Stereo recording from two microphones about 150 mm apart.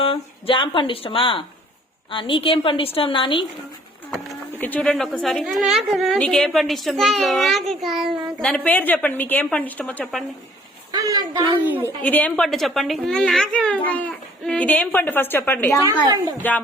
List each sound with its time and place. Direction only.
0.0 s speech: 35° left (ahead or behind)
4.5 s a woman's voice: 10° left (ahead or behind)
8.4 s a child's voice: 10° left (ahead or behind)
10.9 s a sound: 25° right (ahead or behind)
11.6 s a woman's voice: 10° right (ahead or behind)
12.0 s a child's voice: 10° left (ahead or behind)
15.9 s a woman's voice: 20° right (ahead or behind)
16.4 s a child's voice: 10° left (ahead or behind)